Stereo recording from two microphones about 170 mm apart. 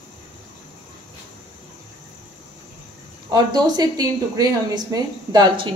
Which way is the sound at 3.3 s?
25° right (ahead or behind).